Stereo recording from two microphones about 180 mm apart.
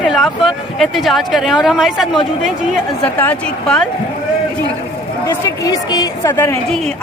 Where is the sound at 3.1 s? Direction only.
10° left (ahead or behind).